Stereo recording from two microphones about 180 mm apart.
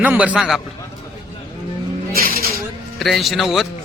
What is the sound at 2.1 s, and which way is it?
Speech, 55° right (ahead or behind).